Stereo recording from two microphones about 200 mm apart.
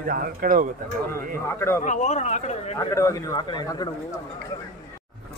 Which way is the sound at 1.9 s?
35° left (ahead or behind).